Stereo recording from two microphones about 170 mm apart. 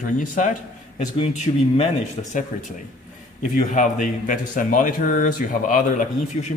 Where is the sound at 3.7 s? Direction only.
50° left (ahead or behind).